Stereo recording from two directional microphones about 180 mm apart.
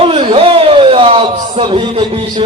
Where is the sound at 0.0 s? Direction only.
30° right (ahead or behind).